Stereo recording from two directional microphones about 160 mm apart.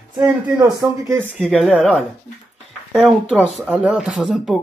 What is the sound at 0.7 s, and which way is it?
Speech, 20° right (ahead or behind).